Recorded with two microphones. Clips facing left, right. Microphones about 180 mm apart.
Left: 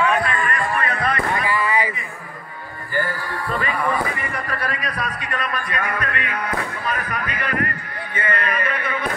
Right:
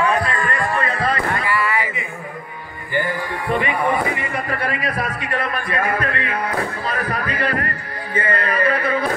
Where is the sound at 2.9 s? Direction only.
20° right (ahead or behind); by 9.1 s 35° right (ahead or behind).